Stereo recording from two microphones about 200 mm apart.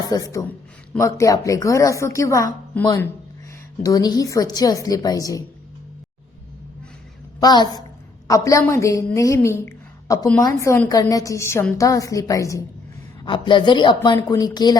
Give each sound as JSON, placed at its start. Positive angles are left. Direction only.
{"t": 0.0, "sound": "a man's voice", "side_deg": 20}
{"t": 7.3, "sound": "a woman's voice", "side_deg": 20}